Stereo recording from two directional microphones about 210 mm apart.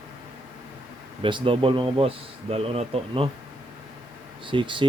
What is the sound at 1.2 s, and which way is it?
Speech, 25° right (ahead or behind).